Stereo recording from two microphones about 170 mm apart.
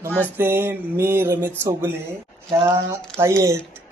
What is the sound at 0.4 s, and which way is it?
A man's voice, 15° right (ahead or behind).